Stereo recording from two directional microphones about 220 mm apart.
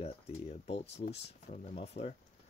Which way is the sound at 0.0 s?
25° left (ahead or behind).